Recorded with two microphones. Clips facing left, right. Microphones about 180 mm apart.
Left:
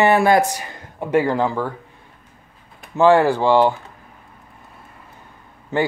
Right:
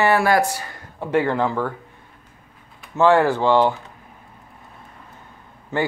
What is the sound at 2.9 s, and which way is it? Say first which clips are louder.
Speech: left 2 dB; 15° left (ahead or behind).